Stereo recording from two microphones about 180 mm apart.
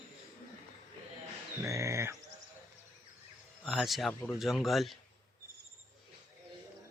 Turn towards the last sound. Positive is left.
turn(degrees=0)  # may be behind; listen again after turning